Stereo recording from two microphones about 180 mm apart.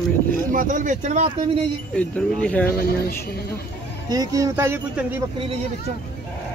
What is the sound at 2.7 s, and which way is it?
Speech, 55° left (ahead or behind).